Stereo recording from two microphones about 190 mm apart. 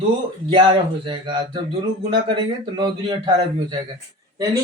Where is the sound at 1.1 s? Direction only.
25° right (ahead or behind).